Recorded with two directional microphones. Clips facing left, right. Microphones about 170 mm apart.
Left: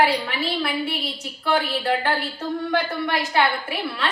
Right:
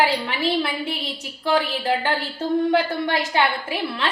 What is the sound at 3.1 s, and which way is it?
A woman's voice, 25° right (ahead or behind).